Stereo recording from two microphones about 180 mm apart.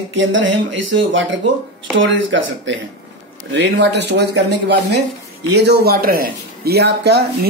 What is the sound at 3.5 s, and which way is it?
Speech, 75° right (ahead or behind).